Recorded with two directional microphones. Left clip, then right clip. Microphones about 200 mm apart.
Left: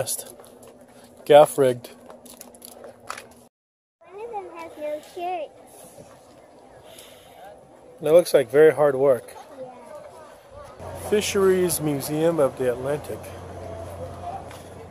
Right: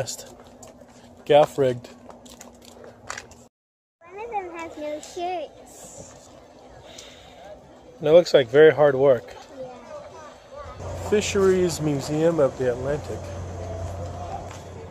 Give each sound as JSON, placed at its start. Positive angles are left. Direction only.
{"t": 0.0, "sound": "speech", "side_deg": 25}
{"t": 4.2, "sound": "children playing", "side_deg": -10}
{"t": 5.2, "sound": "speech", "side_deg": -45}
{"t": 8.0, "sound": "a man's voice", "side_deg": 0}
{"t": 11.1, "sound": "speech", "side_deg": 10}